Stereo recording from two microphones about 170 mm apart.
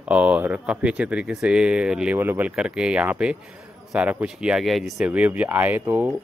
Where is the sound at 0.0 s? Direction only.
10° right (ahead or behind).